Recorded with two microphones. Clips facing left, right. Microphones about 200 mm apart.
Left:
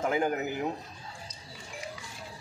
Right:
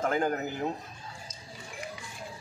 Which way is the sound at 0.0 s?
10° left (ahead or behind).